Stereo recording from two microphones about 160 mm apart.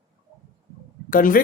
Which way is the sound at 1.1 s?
60° left (ahead or behind).